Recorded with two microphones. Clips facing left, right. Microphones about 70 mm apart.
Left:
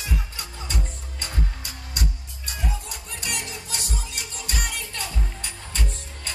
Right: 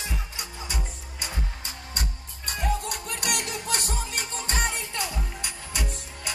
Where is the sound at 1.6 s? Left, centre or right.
Right.